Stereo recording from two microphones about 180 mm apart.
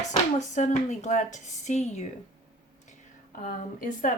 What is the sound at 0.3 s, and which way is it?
Speech, 40° left (ahead or behind).